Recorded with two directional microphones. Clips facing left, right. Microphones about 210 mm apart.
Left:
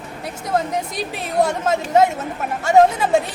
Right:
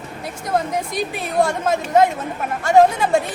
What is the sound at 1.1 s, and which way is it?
Speech, centre (ahead or behind).